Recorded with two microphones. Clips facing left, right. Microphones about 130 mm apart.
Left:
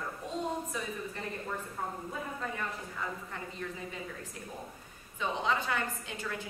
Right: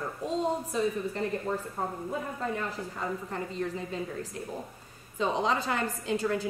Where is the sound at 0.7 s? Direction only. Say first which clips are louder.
Right 9 dB; 30° right (ahead or behind).